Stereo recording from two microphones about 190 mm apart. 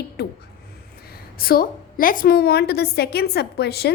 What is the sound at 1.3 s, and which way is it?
A woman's voice, 50° left (ahead or behind).